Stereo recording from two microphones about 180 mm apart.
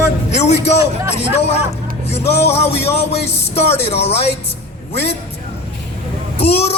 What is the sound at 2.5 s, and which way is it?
Music, 35° left (ahead or behind).